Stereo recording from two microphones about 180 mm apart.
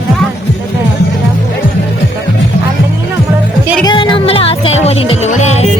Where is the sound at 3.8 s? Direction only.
25° left (ahead or behind).